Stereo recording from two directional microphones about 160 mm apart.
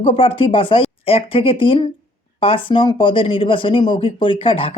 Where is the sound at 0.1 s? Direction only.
35° left (ahead or behind).